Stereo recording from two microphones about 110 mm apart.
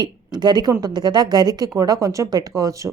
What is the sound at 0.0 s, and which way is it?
A woman's voice, 40° right (ahead or behind).